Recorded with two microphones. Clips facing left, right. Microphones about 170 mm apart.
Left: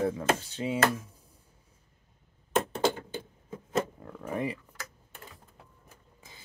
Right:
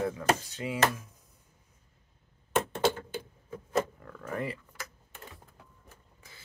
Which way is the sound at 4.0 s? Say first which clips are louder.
Left 3 dB; 20° left (ahead or behind).